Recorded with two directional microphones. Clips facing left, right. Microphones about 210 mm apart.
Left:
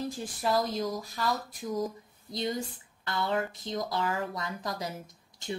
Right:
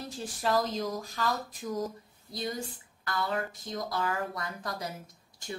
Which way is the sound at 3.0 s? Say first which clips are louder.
Left 2 dB; 25° left (ahead or behind).